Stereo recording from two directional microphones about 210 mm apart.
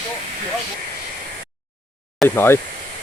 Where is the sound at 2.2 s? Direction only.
10° left (ahead or behind).